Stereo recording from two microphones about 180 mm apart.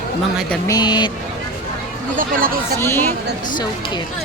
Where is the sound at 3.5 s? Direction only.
25° left (ahead or behind).